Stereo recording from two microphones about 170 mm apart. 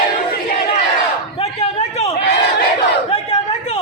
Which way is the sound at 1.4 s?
40° left (ahead or behind).